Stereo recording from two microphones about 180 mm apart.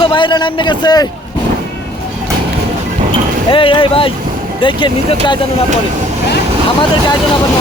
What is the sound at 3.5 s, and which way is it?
Speech, 30° left (ahead or behind).